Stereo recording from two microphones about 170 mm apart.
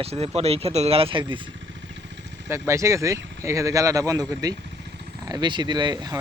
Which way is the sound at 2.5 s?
15° right (ahead or behind).